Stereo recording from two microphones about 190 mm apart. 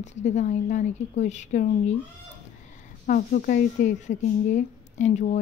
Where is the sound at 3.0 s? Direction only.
45° left (ahead or behind).